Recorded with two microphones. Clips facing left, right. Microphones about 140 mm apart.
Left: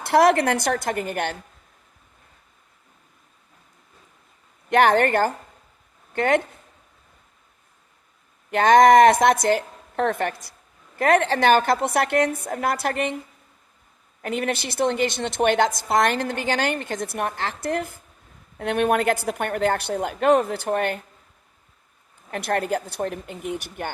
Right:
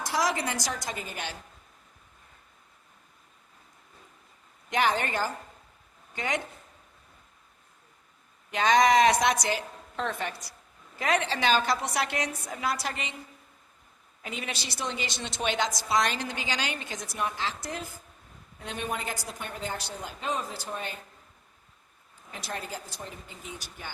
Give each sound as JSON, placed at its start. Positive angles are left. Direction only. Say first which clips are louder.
{"t": 0.0, "sound": "a woman's voice", "louder": "left 11 dB", "side_deg": 60}
{"t": 4.7, "sound": "a woman's voice", "louder": "left 10 dB", "side_deg": 60}
{"t": 8.4, "sound": "a woman's voice", "louder": "left 8 dB", "side_deg": 55}
{"t": 14.2, "sound": "a woman's voice", "louder": "left 11 dB", "side_deg": 55}
{"t": 22.3, "sound": "a woman's voice", "louder": "left 13 dB", "side_deg": 60}